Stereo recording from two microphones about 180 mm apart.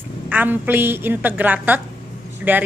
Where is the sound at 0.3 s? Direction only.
10° right (ahead or behind).